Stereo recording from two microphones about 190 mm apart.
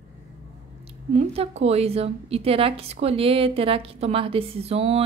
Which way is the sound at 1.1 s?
35° right (ahead or behind).